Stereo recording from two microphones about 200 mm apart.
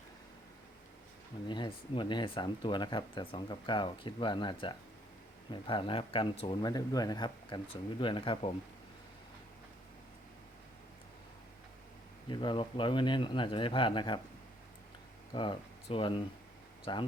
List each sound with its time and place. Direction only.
1.5 s speech: 25° left (ahead or behind)
12.3 s speech: 25° left (ahead or behind)
15.3 s speech: 25° left (ahead or behind)